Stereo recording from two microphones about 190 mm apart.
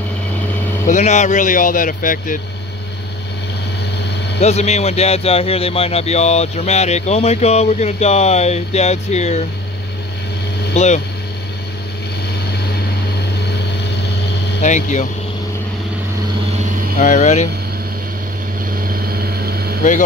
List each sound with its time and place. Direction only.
0.8 s speech: 40° left (ahead or behind)
4.4 s speech: 35° left (ahead or behind)
10.7 s speech: 35° left (ahead or behind)
14.6 s speech: 40° left (ahead or behind)
17.0 s speech: 40° left (ahead or behind)
18.9 s vehicle: 55° right (ahead or behind)